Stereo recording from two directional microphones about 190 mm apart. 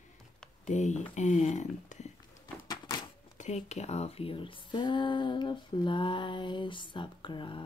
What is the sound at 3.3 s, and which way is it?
Speech, 35° left (ahead or behind).